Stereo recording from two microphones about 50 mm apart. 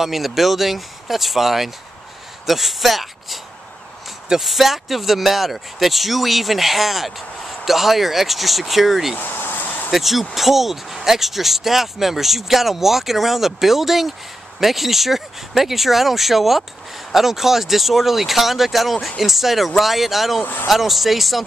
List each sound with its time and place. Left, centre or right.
0.0 s speech: centre
9.2 s a sound: left
9.8 s speech: centre